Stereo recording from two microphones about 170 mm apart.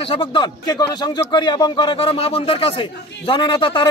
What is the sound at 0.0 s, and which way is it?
A man's voice, 30° left (ahead or behind).